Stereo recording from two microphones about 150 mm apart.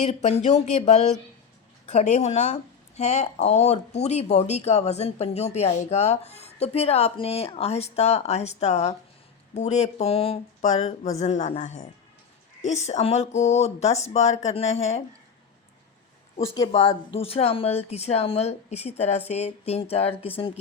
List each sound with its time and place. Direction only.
0.0 s speech: 45° left (ahead or behind)
17.2 s speech: 40° left (ahead or behind)